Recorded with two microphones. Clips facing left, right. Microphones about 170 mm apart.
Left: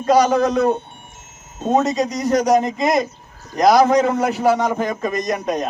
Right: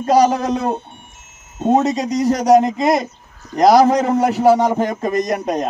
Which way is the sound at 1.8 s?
30° right (ahead or behind).